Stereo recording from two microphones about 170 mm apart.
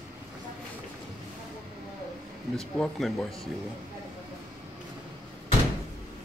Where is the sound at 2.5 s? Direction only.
Centre (ahead or behind).